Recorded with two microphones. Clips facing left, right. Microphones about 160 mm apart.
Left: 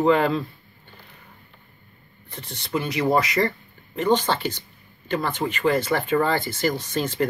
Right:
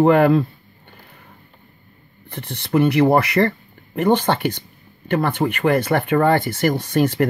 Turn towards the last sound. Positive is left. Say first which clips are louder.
# right 7 dB
turn(degrees=-60)  # may be behind; listen again after turning